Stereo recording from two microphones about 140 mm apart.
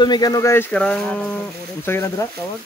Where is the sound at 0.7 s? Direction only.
5° left (ahead or behind).